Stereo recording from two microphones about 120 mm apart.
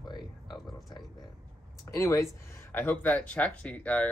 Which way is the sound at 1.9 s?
25° left (ahead or behind).